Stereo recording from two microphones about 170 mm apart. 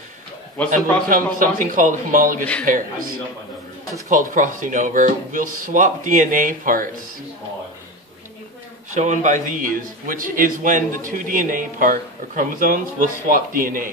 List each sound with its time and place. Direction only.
0.7 s a man's voice: 50° right (ahead or behind)
8.9 s a man's voice: 45° right (ahead or behind)